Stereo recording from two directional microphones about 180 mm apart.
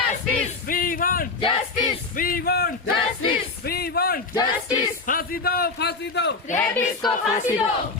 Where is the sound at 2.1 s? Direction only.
55° left (ahead or behind).